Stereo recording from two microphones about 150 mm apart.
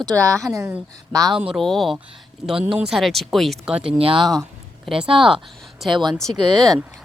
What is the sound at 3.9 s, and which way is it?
Speech, 40° right (ahead or behind).